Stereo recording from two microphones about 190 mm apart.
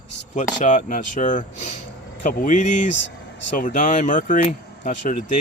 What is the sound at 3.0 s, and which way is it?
Vehicle, 70° left (ahead or behind).